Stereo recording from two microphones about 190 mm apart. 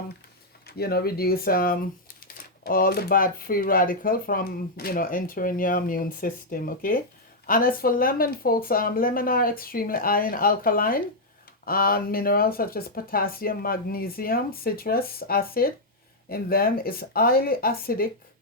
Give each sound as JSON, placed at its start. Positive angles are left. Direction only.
{"t": 0.7, "sound": "speech", "side_deg": 55}